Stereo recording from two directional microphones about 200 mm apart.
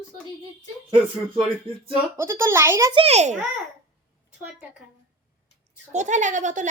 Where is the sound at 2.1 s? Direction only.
15° right (ahead or behind).